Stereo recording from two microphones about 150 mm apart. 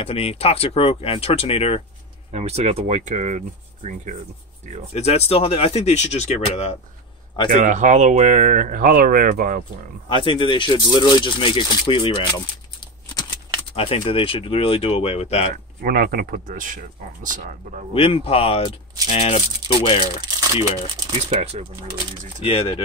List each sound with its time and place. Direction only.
0.0 s speech: 40° left (ahead or behind)
2.3 s speech: 45° right (ahead or behind)
4.9 s speech: 45° left (ahead or behind)
7.5 s speech: 55° right (ahead or behind)
10.0 s speech: 35° left (ahead or behind)
13.7 s speech: 40° left (ahead or behind)
15.5 s speech: 80° right; by 17.8 s 60° right (ahead or behind)
17.9 s speech: 40° left (ahead or behind)
20.2 s speech: 25° right (ahead or behind)
21.3 s speech: 45° right (ahead or behind)
22.4 s speech: 35° left (ahead or behind)